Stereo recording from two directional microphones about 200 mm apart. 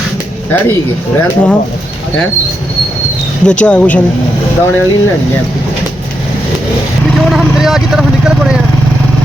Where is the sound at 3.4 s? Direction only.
5° left (ahead or behind).